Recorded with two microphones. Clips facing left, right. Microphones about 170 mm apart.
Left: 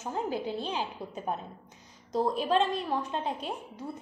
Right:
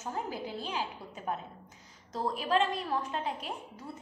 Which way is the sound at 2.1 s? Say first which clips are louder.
Left 3 dB; 20° left (ahead or behind).